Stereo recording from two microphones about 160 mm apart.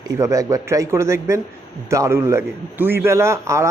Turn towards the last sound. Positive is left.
turn(degrees=-15)  # may be behind; listen again after turning